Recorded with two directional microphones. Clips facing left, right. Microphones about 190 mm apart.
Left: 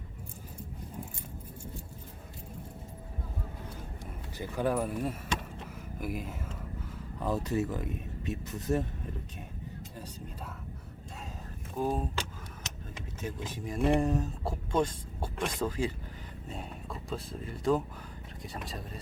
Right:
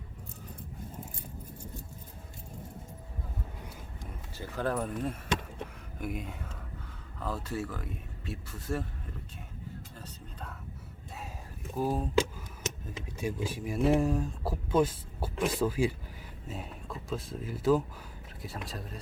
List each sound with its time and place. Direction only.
4.4 s speech: 10° left (ahead or behind)
7.2 s speech: 15° left (ahead or behind)
11.8 s speech: 5° right (ahead or behind)
13.1 s speech: 10° right (ahead or behind)